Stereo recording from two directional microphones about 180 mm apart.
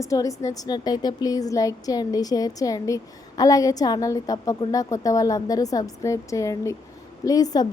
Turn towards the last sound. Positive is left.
turn(degrees=20)  # may be behind; listen again after turning